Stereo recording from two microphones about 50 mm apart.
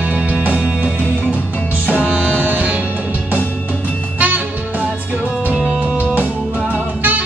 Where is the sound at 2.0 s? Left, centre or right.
Right.